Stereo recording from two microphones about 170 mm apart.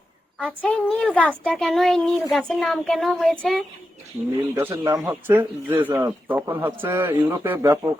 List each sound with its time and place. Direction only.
0.3 s speech: 10° left (ahead or behind)
4.5 s speech: 15° right (ahead or behind)